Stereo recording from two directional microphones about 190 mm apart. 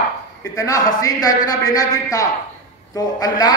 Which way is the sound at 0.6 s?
20° left (ahead or behind).